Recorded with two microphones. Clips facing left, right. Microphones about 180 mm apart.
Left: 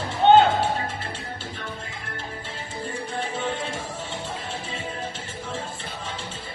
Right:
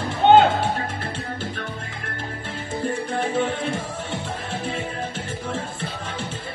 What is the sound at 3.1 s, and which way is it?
Music, 55° right (ahead or behind).